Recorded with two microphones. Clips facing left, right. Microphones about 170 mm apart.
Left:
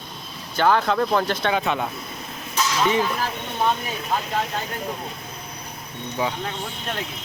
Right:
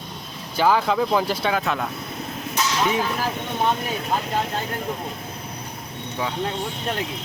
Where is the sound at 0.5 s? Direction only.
5° right (ahead or behind).